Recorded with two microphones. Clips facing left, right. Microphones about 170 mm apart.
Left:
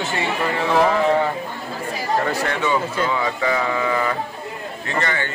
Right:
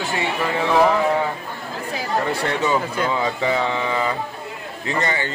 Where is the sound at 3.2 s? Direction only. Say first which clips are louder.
Right 1 dB; 20° right (ahead or behind).